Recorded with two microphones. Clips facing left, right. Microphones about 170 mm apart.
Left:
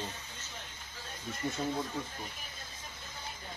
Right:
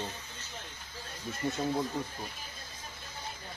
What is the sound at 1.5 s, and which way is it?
Speech, 15° right (ahead or behind).